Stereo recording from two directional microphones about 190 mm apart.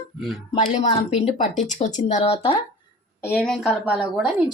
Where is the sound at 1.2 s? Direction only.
40° left (ahead or behind).